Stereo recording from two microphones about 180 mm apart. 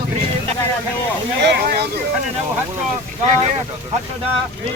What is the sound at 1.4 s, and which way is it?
Speech, 70° right (ahead or behind).